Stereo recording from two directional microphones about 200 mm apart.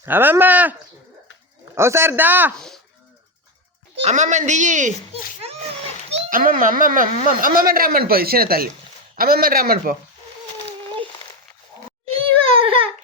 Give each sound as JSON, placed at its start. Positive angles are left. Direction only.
{"t": 0.0, "sound": "a man's voice", "side_deg": -10}
{"t": 2.6, "sound": "a sound", "side_deg": 5}
{"t": 3.9, "sound": "speech", "side_deg": -35}
{"t": 6.1, "sound": "speech", "side_deg": -35}
{"t": 12.1, "sound": "crying", "side_deg": -25}